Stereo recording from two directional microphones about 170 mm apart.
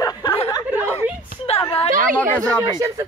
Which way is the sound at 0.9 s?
10° right (ahead or behind).